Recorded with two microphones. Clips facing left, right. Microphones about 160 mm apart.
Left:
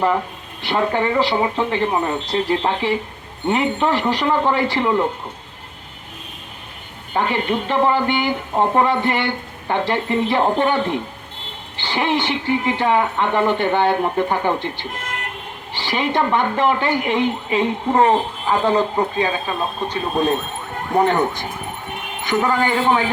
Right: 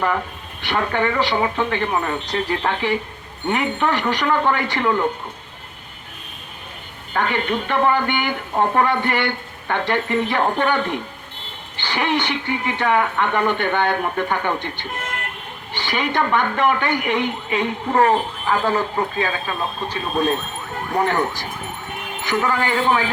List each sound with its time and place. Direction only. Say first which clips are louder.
0.6 s speech: left 2 dB; 30° left (ahead or behind)
7.1 s speech: left 1 dB; 30° left (ahead or behind)